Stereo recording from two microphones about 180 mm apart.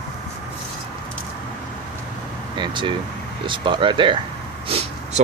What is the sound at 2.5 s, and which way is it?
Speech, 25° right (ahead or behind).